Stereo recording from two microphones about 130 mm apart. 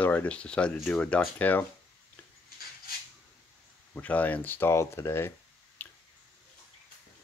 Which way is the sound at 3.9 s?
10° left (ahead or behind).